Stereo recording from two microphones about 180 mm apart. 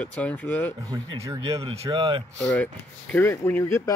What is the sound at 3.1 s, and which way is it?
Speech, 10° left (ahead or behind).